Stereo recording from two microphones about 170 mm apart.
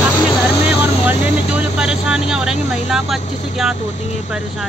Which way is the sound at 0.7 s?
10° right (ahead or behind).